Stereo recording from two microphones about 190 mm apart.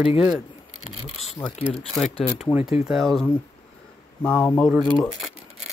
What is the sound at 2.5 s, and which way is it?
Speech, 10° right (ahead or behind).